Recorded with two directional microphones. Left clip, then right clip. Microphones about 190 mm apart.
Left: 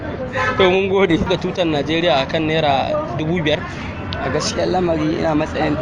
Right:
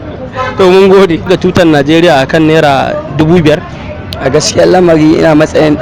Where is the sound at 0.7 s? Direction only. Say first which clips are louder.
Right 11 dB; 45° right (ahead or behind).